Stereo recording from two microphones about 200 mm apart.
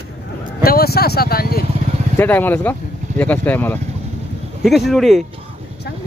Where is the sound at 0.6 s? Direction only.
50° left (ahead or behind).